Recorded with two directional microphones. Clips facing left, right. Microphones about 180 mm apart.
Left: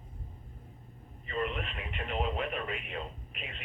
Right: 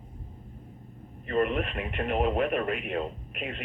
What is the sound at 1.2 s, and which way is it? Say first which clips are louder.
Speech: right 8 dB; 55° right (ahead or behind).